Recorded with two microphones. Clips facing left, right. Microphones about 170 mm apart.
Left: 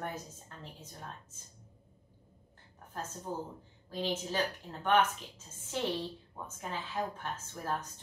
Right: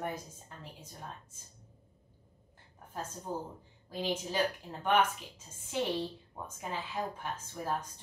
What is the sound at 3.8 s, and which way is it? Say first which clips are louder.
A woman's voice: even; 10° right (ahead or behind).